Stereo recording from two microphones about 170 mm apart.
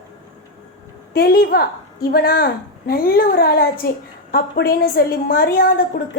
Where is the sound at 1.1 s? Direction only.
65° left (ahead or behind).